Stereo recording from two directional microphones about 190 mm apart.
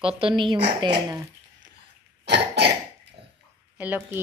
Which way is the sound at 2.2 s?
60° right (ahead or behind).